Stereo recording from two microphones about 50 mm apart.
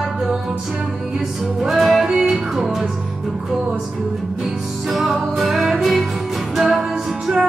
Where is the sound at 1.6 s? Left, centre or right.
Centre.